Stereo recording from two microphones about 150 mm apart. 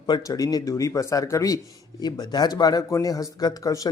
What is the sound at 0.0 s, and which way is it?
A man's voice, 25° left (ahead or behind).